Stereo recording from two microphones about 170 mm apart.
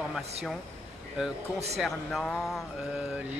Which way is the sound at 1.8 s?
Centre (ahead or behind).